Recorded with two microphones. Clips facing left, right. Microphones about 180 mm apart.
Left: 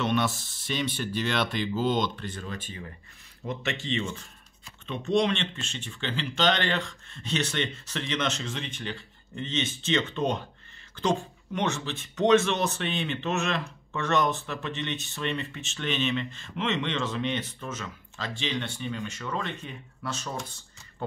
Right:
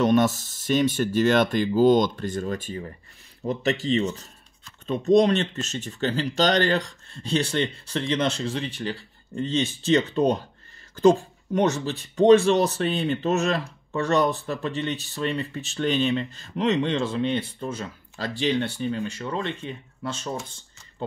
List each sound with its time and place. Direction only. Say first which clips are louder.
0.0 s speech: right 7 dB; 40° right (ahead or behind)